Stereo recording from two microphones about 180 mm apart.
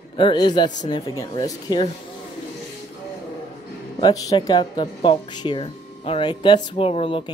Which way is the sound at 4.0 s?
25° left (ahead or behind).